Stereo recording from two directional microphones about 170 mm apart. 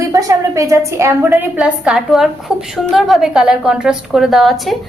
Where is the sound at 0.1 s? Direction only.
20° right (ahead or behind).